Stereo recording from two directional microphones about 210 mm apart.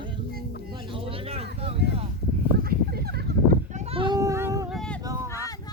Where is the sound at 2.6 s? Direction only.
50° right (ahead or behind).